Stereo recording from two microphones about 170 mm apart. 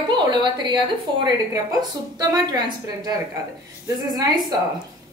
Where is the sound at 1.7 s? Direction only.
20° right (ahead or behind).